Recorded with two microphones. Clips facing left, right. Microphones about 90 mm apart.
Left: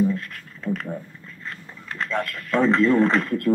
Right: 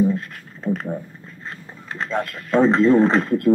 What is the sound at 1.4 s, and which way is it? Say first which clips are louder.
Speech: right 1 dB; 20° right (ahead or behind).